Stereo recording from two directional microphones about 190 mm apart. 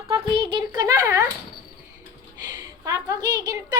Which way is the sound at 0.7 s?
15° right (ahead or behind).